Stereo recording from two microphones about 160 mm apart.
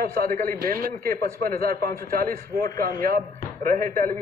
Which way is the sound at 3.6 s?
55° right (ahead or behind).